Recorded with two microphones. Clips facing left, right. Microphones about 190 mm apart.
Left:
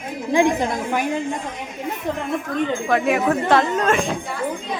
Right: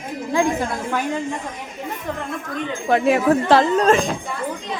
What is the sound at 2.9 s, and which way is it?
Speech, 30° right (ahead or behind).